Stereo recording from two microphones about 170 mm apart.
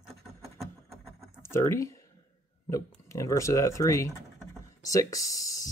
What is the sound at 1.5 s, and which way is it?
Speech, 15° left (ahead or behind).